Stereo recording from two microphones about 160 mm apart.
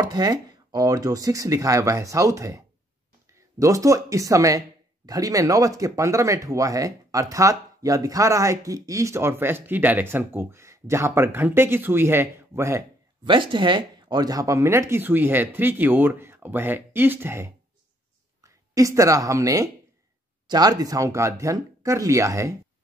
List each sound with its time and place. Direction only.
0.0 s speech: 25° right (ahead or behind)
13.2 s speech: 30° right (ahead or behind)